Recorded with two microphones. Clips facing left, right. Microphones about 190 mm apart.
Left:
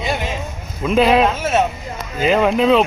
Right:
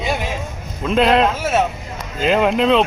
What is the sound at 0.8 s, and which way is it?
Speech, 5° left (ahead or behind).